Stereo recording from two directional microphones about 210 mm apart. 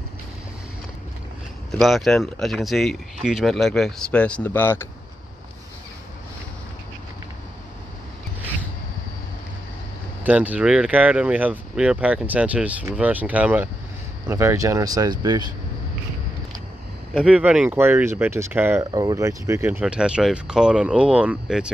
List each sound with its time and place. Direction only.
1.7 s speech: centre (ahead or behind)
10.2 s speech: 5° right (ahead or behind)
17.1 s speech: 5° right (ahead or behind)